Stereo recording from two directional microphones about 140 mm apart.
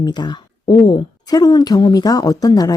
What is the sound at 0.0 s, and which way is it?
Speech, 30° left (ahead or behind).